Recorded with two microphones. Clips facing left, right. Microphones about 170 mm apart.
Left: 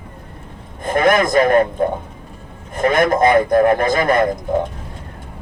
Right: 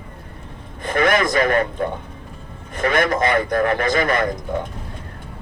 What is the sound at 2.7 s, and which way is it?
Speech, 50° left (ahead or behind).